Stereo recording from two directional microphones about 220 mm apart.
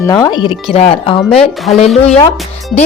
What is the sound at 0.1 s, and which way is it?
Speech, 20° left (ahead or behind).